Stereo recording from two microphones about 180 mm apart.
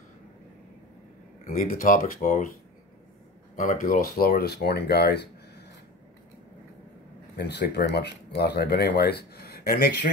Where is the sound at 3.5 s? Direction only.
50° left (ahead or behind); by 5.3 s 65° left (ahead or behind).